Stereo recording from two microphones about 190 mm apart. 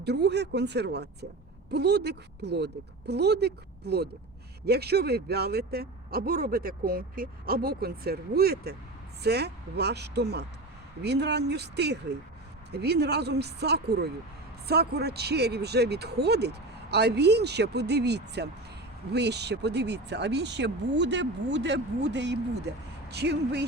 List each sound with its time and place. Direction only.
0.0 s speech: 60° right (ahead or behind)